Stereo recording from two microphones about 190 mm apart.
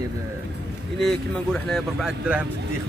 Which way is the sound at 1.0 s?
5° left (ahead or behind).